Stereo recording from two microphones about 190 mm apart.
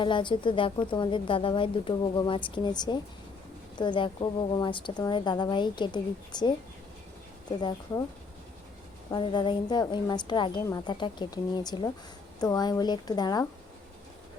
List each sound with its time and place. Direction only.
0.0 s a woman's voice: 25° left (ahead or behind)
7.6 s a woman's voice: 25° left (ahead or behind)
9.0 s a woman's voice: 25° left (ahead or behind)